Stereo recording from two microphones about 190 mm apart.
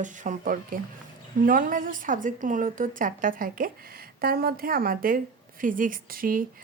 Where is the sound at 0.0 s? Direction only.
40° right (ahead or behind).